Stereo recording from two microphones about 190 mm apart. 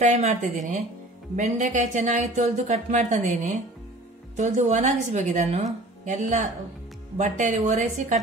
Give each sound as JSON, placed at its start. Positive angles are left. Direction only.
{"t": 0.0, "sound": "speech", "side_deg": -35}